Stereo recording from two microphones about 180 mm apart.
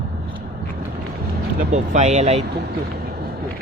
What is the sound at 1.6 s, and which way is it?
Speech, 40° right (ahead or behind).